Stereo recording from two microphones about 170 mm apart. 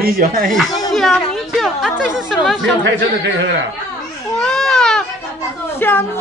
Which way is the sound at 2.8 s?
85° right.